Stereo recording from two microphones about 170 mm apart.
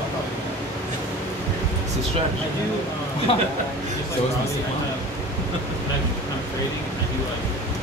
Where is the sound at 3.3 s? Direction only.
35° left (ahead or behind).